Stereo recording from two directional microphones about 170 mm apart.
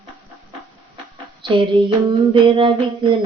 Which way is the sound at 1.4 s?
30° right (ahead or behind).